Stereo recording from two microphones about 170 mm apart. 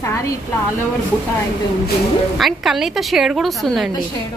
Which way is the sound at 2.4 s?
Centre (ahead or behind).